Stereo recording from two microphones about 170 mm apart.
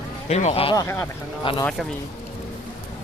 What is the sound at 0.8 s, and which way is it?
Speech, 15° left (ahead or behind).